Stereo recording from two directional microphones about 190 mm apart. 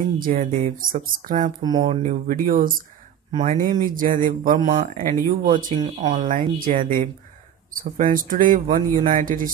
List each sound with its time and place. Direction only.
0.0 s speech: 45° right (ahead or behind)